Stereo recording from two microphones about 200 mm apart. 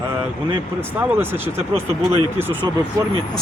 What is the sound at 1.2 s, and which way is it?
Speech, 10° right (ahead or behind).